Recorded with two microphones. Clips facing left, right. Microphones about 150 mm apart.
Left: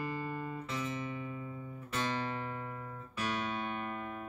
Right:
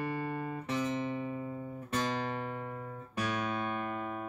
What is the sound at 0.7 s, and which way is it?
Music, 65° right (ahead or behind).